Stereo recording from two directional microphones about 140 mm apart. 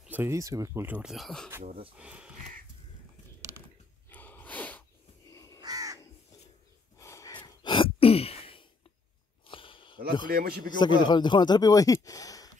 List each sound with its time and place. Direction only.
0.0 s speech: 15° right (ahead or behind)
0.8 s speech: 10° right (ahead or behind)
1.1 s speech: centre (ahead or behind)
4.1 s gasp: 10° left (ahead or behind)
5.3 s crow: 25° left (ahead or behind)
5.6 s crow: 25° right (ahead or behind)
7.0 s snort: 20° left (ahead or behind)
7.3 s sigh: 35° left (ahead or behind)
9.5 s a sound: 40° left (ahead or behind)
10.2 s a man's voice: 90° right
10.8 s speech: 35° left (ahead or behind)